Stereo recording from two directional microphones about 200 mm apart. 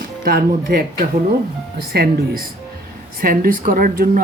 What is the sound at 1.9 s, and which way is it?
Speech, 45° right (ahead or behind).